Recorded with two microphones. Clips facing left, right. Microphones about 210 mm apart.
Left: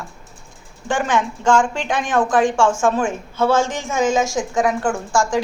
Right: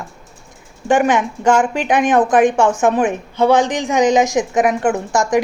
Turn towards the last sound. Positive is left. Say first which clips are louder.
# right 3 dB
turn(degrees=-20)  # may be behind; listen again after turning